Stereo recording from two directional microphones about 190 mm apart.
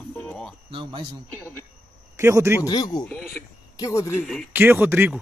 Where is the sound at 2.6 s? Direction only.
20° left (ahead or behind).